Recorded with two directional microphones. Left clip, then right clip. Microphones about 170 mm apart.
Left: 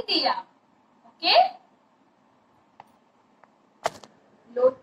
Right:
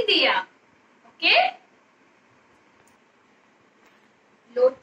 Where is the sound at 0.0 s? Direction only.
15° right (ahead or behind).